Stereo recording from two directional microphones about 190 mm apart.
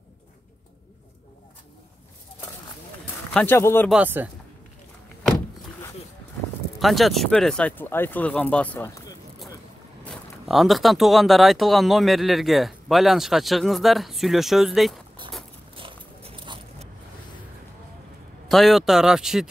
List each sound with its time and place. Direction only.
3.3 s speech: 10° left (ahead or behind)
3.9 s speech: 10° right (ahead or behind)
6.8 s speech: centre (ahead or behind)
10.0 s speech: centre (ahead or behind)
15.7 s a sound: 30° right (ahead or behind)
18.5 s speech: centre (ahead or behind)